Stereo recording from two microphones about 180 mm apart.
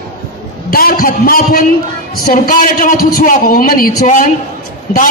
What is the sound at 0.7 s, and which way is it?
A man's voice, 55° left (ahead or behind).